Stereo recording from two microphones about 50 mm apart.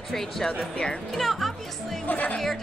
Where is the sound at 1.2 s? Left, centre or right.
Centre.